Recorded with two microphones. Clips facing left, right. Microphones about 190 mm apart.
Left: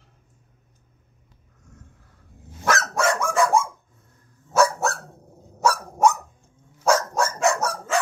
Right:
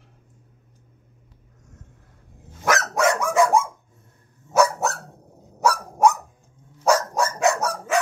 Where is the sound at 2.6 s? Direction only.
15° right (ahead or behind).